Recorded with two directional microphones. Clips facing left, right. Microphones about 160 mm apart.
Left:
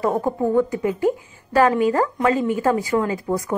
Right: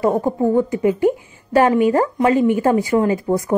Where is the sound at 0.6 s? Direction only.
20° right (ahead or behind).